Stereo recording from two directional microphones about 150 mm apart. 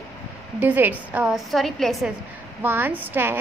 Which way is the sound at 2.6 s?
15° right (ahead or behind).